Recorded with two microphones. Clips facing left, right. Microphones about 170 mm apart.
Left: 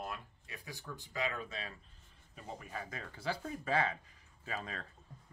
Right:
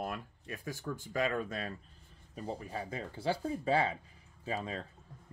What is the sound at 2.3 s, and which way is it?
Speech, 35° right (ahead or behind).